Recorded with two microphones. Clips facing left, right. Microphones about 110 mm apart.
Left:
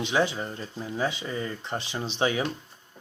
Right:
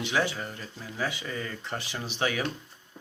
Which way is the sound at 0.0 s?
20° left (ahead or behind).